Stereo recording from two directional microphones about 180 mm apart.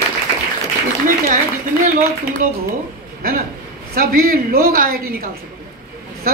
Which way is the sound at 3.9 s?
55° right (ahead or behind).